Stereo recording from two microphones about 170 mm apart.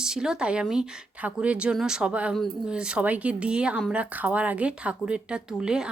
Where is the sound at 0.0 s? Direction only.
5° right (ahead or behind).